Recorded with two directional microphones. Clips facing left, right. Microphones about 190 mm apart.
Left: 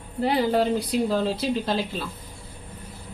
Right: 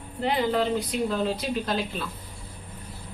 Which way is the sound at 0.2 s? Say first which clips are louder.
Left 3 dB; 35° left (ahead or behind).